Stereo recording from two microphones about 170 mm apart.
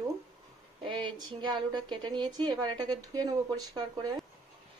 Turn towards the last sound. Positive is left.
turn(degrees=-25)  # may be behind; listen again after turning